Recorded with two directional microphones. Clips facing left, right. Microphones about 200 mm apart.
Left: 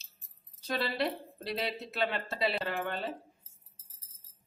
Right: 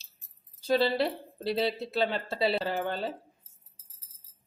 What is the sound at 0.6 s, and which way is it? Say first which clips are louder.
Speech: right 7 dB; 30° right (ahead or behind).